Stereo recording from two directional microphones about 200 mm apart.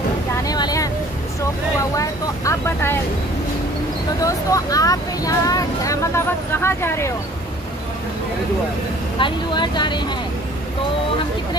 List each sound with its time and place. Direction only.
0.5 s vehicle: 20° left (ahead or behind)
2.0 s speech: 15° left (ahead or behind)
4.2 s speech: 15° left (ahead or behind)
9.2 s speech: 20° left (ahead or behind)